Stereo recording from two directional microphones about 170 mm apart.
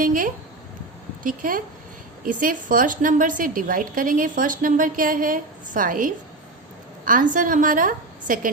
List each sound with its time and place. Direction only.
0.0 s a woman's voice: 50° right (ahead or behind)